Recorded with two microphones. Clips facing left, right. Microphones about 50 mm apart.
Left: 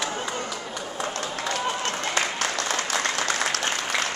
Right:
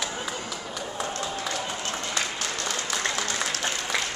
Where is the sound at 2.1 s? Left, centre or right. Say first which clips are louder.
Left 5 dB; left.